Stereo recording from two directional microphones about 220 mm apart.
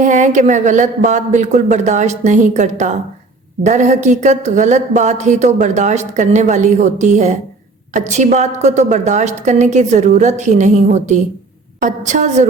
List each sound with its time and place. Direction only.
0.0 s speech: 35° right (ahead or behind)